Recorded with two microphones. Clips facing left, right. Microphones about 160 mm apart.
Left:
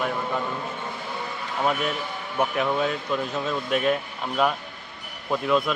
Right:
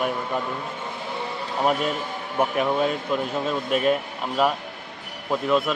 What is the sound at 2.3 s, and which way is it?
Speech, 25° right (ahead or behind).